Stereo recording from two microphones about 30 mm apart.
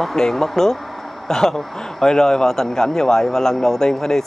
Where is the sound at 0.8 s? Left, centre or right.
Centre.